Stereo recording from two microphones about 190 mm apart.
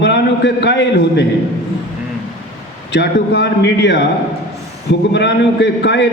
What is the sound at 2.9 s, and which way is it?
A man's voice, 60° left (ahead or behind).